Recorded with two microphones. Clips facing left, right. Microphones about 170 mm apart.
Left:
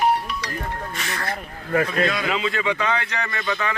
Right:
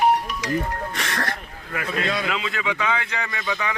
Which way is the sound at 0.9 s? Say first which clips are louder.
Right 2 dB; 75° right (ahead or behind).